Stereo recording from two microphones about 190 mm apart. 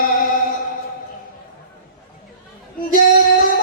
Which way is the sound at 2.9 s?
45° left (ahead or behind).